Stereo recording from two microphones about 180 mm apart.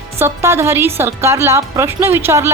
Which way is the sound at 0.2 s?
15° right (ahead or behind).